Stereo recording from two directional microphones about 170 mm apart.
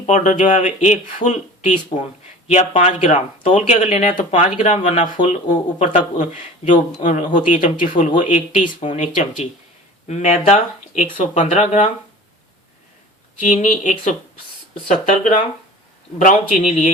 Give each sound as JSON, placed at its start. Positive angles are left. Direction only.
{"t": 0.0, "sound": "speech", "side_deg": 45}
{"t": 13.4, "sound": "speech", "side_deg": 45}